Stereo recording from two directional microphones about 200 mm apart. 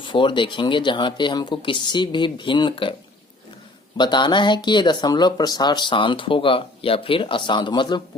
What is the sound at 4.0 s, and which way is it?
Speech, 20° left (ahead or behind).